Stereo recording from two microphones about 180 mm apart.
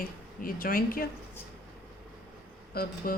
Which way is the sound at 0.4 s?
50° left (ahead or behind).